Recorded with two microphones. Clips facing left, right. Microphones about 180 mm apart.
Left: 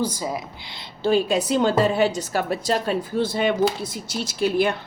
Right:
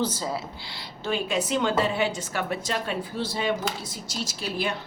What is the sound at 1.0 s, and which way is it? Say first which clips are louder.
A woman's voice: left 7 dB; 35° left (ahead or behind).